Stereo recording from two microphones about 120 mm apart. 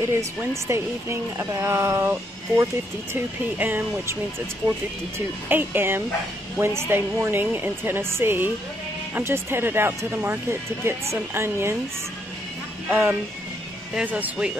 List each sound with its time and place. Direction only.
0.0 s speech: 20° right (ahead or behind)
5.5 s speech: 15° right (ahead or behind)
12.9 s speech: 15° right (ahead or behind)